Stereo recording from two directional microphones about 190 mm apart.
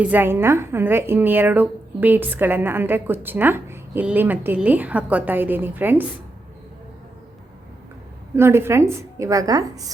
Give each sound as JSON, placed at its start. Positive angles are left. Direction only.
{"t": 0.0, "sound": "speech", "side_deg": -10}
{"t": 8.4, "sound": "speech", "side_deg": -15}